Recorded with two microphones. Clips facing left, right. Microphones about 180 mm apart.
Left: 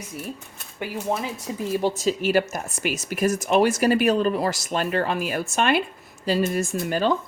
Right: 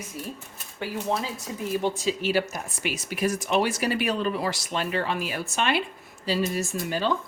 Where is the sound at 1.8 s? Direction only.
40° left (ahead or behind).